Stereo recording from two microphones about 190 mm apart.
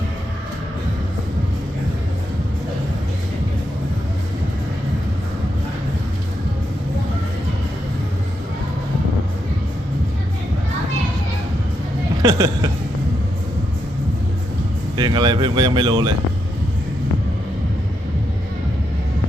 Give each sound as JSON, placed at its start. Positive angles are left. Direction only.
{"t": 12.2, "sound": "speech", "side_deg": -20}
{"t": 14.9, "sound": "speech", "side_deg": -20}